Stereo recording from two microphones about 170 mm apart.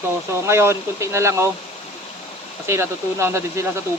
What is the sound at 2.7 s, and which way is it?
Speech, 15° right (ahead or behind).